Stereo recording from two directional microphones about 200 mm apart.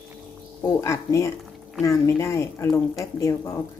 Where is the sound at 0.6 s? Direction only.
15° left (ahead or behind).